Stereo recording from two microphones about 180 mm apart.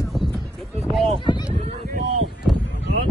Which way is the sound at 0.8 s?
Centre (ahead or behind).